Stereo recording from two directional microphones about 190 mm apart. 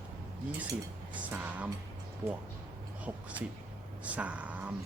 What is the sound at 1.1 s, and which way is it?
Speech, 10° right (ahead or behind).